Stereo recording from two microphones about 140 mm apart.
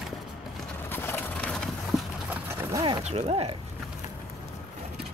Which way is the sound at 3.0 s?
50° right (ahead or behind).